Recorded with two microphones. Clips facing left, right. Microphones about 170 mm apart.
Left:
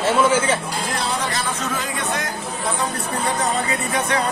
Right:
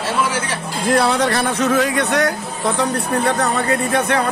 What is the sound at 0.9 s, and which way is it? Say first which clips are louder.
Speech: right 11 dB; 65° right (ahead or behind).